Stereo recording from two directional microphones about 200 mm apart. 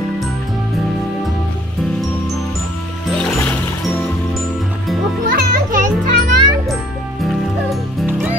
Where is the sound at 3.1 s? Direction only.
5° left (ahead or behind).